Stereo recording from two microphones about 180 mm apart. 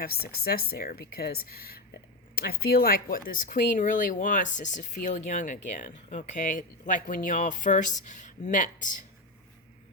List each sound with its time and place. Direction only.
0.0 s speech: 60° left (ahead or behind)